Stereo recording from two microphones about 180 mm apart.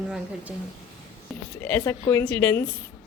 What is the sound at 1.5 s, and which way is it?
Speech, 15° left (ahead or behind).